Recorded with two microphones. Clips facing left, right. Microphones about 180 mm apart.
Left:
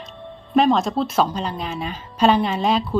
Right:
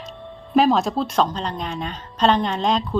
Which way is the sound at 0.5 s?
Centre (ahead or behind).